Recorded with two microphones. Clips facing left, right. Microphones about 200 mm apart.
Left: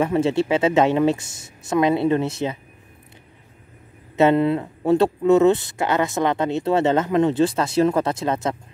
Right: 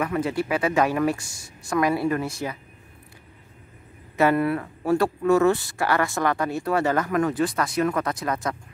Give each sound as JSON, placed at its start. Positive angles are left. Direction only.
{"t": 0.0, "sound": "speech", "side_deg": 25}
{"t": 4.2, "sound": "speech", "side_deg": 20}